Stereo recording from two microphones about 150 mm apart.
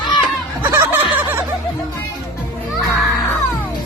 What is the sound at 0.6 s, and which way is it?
Snicker, 15° right (ahead or behind).